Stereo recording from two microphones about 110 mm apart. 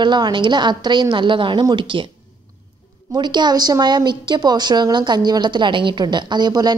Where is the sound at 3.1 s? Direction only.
40° right (ahead or behind).